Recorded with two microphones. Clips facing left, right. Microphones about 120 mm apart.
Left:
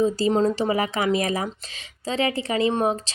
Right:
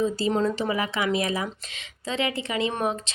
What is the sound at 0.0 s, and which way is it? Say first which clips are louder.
Speech: left 4 dB; 35° left (ahead or behind).